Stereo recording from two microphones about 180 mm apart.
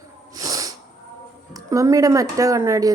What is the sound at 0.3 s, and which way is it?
Sneeze, 20° right (ahead or behind).